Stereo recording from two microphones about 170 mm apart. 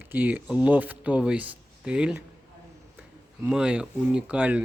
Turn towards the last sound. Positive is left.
turn(degrees=-10)  # may be behind; listen again after turning